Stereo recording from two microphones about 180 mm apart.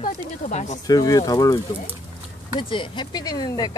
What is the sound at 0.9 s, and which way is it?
Speech, 20° left (ahead or behind).